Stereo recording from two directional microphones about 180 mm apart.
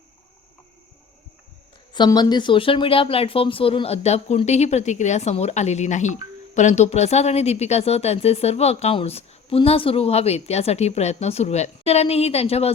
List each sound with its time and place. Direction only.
1.9 s speech: 25° left (ahead or behind)